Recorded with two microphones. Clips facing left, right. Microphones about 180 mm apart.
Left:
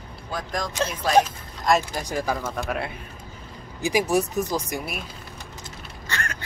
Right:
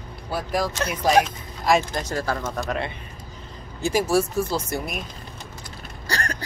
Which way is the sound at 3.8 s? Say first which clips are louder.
Right 1 dB; 15° left (ahead or behind).